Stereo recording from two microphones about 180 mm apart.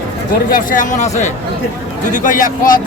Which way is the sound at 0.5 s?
45° left (ahead or behind).